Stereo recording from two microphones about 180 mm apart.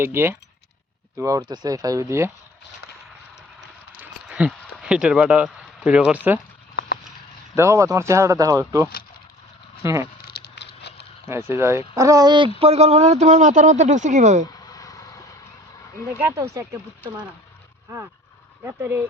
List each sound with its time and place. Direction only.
0.0 s speech: 15° right (ahead or behind)
4.0 s a sound: 5° right (ahead or behind)
6.7 s clip-clop: 65° left (ahead or behind)
7.5 s speech: 15° right (ahead or behind)
10.2 s a sound: 60° left (ahead or behind)
11.3 s speech: 15° right (ahead or behind)
12.5 s speech: 35° right (ahead or behind)
14.7 s vehicle: 20° left (ahead or behind)
16.1 s speech: 15° right (ahead or behind)
18.6 s speech: 15° right (ahead or behind)